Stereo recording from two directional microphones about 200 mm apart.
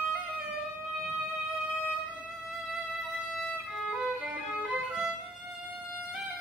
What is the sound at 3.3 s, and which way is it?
Violin, 5° right (ahead or behind).